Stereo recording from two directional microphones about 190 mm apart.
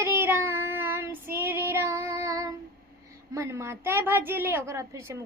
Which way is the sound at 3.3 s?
15° right (ahead or behind).